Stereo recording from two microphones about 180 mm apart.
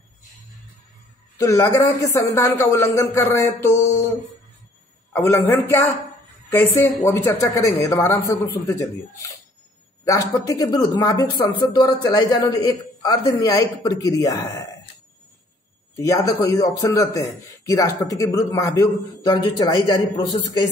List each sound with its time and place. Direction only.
1.4 s speech: 15° left (ahead or behind)
5.1 s speech: 15° left (ahead or behind)
16.0 s speech: 20° left (ahead or behind)